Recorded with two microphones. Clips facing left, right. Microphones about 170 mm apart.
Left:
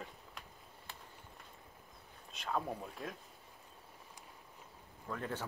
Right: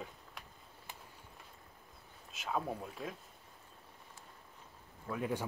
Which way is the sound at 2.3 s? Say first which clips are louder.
Right 1 dB; 5° right (ahead or behind).